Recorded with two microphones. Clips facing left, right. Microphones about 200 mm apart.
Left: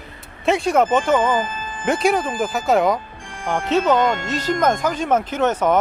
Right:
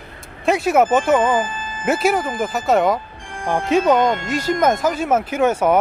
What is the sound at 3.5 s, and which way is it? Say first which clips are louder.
Speech: right 2 dB; 10° right (ahead or behind).